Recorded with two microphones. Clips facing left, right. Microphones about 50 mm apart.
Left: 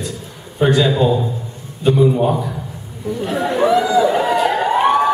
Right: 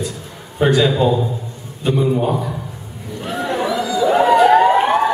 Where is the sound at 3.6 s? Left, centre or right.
Left.